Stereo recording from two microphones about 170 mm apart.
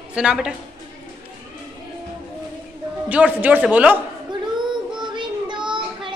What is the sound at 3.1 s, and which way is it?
Speech, 10° right (ahead or behind).